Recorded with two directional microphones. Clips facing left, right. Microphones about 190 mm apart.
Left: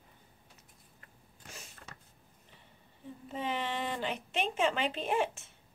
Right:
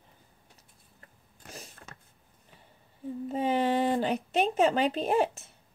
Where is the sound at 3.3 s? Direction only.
40° right (ahead or behind).